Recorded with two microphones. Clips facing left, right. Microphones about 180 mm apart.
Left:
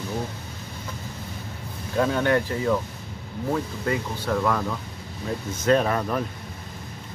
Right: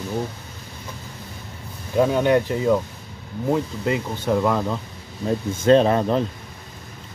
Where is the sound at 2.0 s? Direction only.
15° right (ahead or behind).